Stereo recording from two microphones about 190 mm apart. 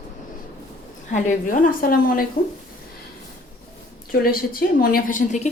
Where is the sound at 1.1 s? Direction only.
45° left (ahead or behind).